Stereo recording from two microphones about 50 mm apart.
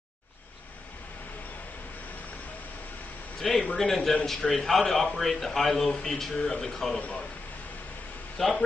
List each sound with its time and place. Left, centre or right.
3.3 s a man's voice: centre
6.3 s a man's voice: centre
7.0 s a man's voice: left
8.4 s a man's voice: centre